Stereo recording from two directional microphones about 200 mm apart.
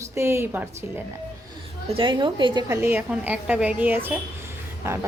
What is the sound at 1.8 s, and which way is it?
A woman's voice, 25° right (ahead or behind).